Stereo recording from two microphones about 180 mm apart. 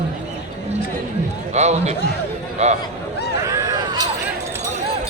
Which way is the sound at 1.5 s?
40° right (ahead or behind).